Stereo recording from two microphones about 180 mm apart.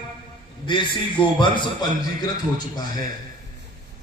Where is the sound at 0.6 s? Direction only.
25° left (ahead or behind).